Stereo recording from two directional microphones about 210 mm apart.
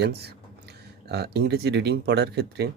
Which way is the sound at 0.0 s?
50° right (ahead or behind).